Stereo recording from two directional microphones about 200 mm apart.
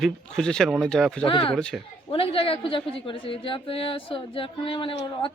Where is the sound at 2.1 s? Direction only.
30° left (ahead or behind).